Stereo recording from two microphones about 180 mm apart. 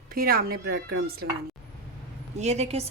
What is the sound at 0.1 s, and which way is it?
Speech, 55° right (ahead or behind).